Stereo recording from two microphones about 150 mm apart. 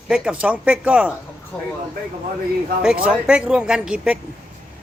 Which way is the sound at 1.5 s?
5° left (ahead or behind).